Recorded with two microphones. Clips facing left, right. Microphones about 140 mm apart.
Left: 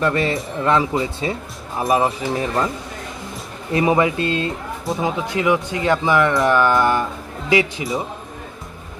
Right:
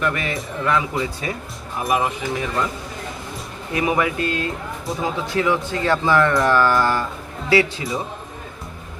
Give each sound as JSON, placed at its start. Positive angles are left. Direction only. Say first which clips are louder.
{"t": 0.0, "sound": "speech", "louder": "left 4 dB", "side_deg": 30}
{"t": 3.7, "sound": "speech", "louder": "left 4 dB", "side_deg": 25}